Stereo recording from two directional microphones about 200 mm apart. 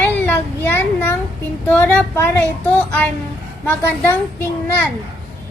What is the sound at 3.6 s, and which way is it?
Speech, 10° left (ahead or behind).